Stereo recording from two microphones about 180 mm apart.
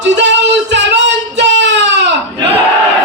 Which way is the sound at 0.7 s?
75° right (ahead or behind).